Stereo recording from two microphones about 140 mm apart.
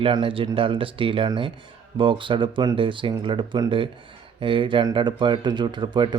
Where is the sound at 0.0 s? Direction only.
40° right (ahead or behind).